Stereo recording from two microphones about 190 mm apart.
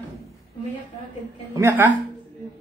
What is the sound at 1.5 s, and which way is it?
Speech, 15° right (ahead or behind).